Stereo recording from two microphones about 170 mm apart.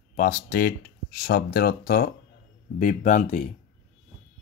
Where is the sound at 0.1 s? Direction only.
50° left (ahead or behind).